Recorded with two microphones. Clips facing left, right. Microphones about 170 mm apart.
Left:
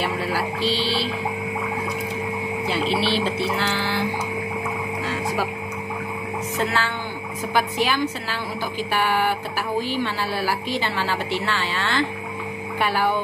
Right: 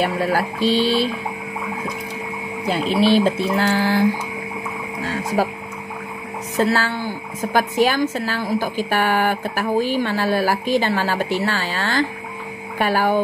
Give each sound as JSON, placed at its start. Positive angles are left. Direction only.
{"t": 0.0, "sound": "a woman's voice", "side_deg": -50}
{"t": 2.6, "sound": "a woman's voice", "side_deg": -45}
{"t": 5.0, "sound": "a sound", "side_deg": -45}
{"t": 6.5, "sound": "a woman's voice", "side_deg": -40}